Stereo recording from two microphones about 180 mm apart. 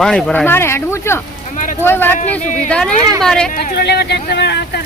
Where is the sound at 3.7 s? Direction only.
65° left (ahead or behind).